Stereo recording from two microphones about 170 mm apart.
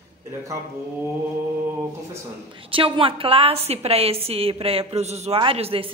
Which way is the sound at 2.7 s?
30° right (ahead or behind).